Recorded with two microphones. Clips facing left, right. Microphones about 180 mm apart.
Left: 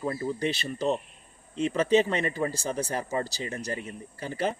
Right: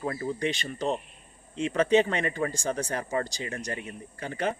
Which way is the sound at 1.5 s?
30° left (ahead or behind).